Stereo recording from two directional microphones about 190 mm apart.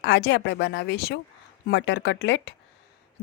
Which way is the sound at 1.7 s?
70° left (ahead or behind).